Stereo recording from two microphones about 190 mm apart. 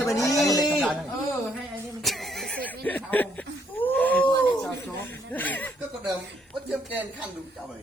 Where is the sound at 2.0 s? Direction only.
Centre (ahead or behind).